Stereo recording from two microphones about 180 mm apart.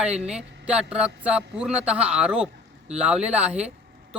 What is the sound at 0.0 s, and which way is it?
A man's voice, 5° right (ahead or behind).